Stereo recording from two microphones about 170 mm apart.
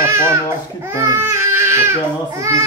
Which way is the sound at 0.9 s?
15° right (ahead or behind).